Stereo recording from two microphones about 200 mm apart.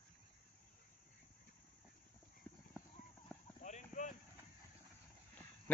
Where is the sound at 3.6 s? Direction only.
35° left (ahead or behind).